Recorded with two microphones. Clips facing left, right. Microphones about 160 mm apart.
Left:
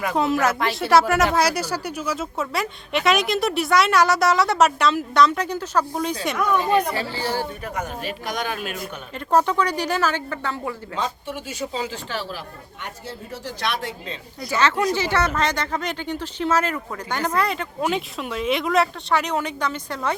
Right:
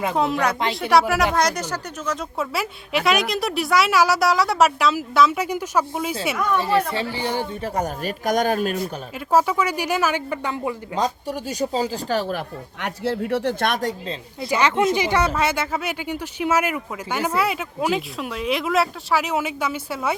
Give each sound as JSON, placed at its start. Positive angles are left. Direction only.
{"t": 0.2, "sound": "speech", "side_deg": 0}
{"t": 6.7, "sound": "speech", "side_deg": -25}
{"t": 7.1, "sound": "speech", "side_deg": -15}
{"t": 7.6, "sound": "speech", "side_deg": -35}
{"t": 9.1, "sound": "speech", "side_deg": -5}
{"t": 10.9, "sound": "speech", "side_deg": -40}
{"t": 14.5, "sound": "speech", "side_deg": -15}